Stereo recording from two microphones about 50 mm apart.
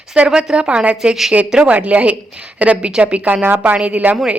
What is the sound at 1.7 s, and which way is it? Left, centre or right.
A woman's voice, right.